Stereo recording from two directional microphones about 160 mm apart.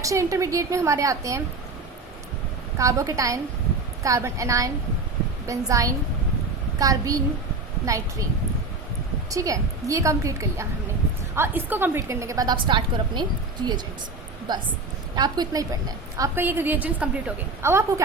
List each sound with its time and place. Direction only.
0.0 s a woman's voice: 20° right (ahead or behind)
2.7 s a woman's voice: 20° right (ahead or behind)
9.3 s a woman's voice: 20° right (ahead or behind)